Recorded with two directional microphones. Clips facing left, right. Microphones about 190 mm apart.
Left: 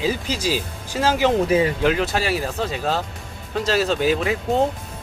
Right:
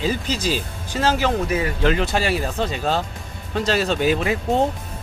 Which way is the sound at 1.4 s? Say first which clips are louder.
Left 5 dB; 25° left (ahead or behind).